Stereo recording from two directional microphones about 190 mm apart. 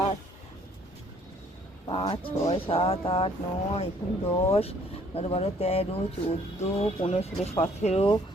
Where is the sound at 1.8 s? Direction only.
25° left (ahead or behind).